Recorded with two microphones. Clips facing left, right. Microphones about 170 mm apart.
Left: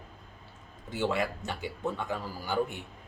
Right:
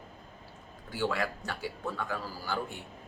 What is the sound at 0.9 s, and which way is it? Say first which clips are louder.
Speech: left 2 dB; 20° left (ahead or behind).